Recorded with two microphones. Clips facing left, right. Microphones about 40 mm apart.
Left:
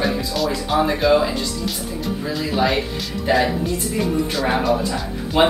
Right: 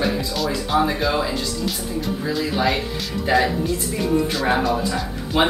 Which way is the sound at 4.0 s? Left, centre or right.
Centre.